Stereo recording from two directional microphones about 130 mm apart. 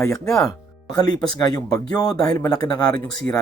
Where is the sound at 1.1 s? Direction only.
30° left (ahead or behind).